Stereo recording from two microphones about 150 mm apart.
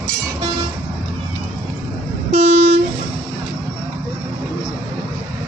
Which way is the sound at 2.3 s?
50° right (ahead or behind).